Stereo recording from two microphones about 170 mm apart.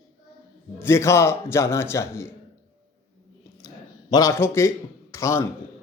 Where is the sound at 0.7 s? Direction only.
15° left (ahead or behind).